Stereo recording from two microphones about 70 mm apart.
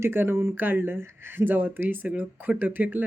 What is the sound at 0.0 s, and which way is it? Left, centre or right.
Speech, right.